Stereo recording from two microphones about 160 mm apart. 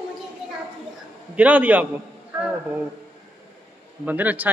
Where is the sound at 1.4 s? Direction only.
10° right (ahead or behind).